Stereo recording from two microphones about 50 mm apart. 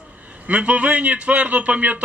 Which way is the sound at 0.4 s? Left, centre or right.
Right.